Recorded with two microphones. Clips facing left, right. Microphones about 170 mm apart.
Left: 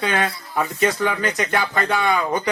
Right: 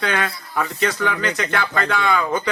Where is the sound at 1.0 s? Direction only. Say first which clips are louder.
Even; 15° left (ahead or behind).